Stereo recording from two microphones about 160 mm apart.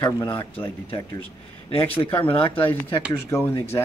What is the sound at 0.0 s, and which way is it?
Speech, 30° left (ahead or behind).